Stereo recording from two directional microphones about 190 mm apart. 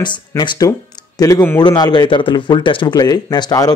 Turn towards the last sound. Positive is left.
turn(degrees=20)  # may be behind; listen again after turning